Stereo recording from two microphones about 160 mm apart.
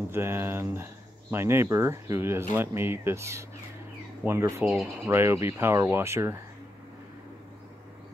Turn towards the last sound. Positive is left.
turn(degrees=-15)  # may be behind; listen again after turning